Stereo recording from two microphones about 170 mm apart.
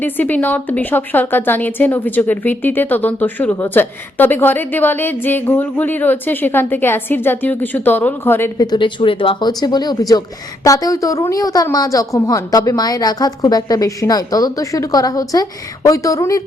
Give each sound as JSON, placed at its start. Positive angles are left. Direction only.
{"t": 0.0, "sound": "a woman's voice", "side_deg": 10}
{"t": 8.6, "sound": "speech", "side_deg": 25}